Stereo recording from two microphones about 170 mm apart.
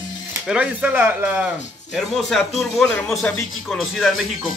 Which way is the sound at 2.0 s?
Centre (ahead or behind).